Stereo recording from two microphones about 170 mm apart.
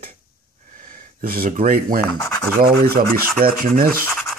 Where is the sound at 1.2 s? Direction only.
60° right (ahead or behind).